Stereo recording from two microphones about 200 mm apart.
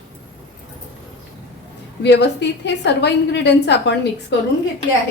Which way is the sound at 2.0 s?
60° left (ahead or behind).